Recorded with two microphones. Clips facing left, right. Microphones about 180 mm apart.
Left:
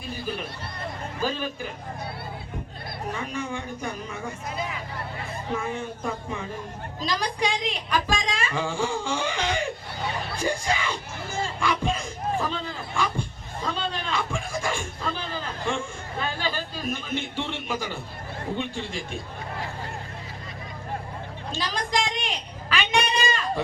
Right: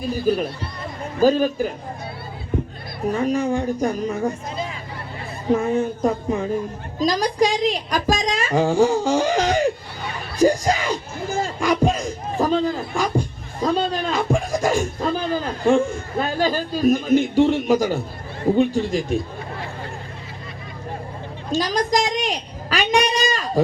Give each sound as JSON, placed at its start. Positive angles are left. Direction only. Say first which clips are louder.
{"t": 1.2, "sound": "speech", "louder": "right 13 dB", "side_deg": -40}
{"t": 3.1, "sound": "speech", "louder": "right 12 dB", "side_deg": -35}
{"t": 4.5, "sound": "hubbub", "louder": "right 3 dB", "side_deg": -30}
{"t": 5.5, "sound": "speech", "louder": "right 12 dB", "side_deg": -40}
{"t": 21.5, "sound": "a sound", "louder": "right 8 dB", "side_deg": -40}